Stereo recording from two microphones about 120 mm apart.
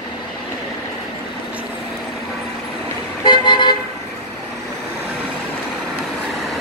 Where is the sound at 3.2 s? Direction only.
40° left (ahead or behind).